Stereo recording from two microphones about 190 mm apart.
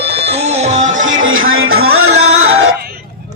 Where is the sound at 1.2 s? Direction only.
90° right.